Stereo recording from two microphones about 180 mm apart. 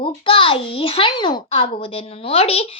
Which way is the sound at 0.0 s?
30° left (ahead or behind).